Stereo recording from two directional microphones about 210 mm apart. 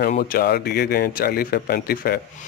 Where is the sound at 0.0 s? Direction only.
45° left (ahead or behind).